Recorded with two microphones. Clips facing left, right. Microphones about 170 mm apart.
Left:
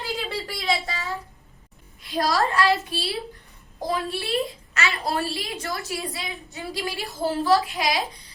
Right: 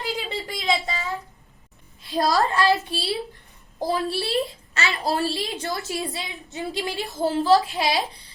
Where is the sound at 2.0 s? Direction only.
25° right (ahead or behind).